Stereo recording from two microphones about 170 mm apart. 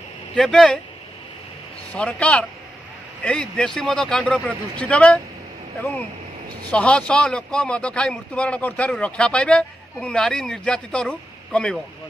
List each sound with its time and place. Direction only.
0.4 s speech: 5° left (ahead or behind)
1.9 s a man's voice: 5° left (ahead or behind)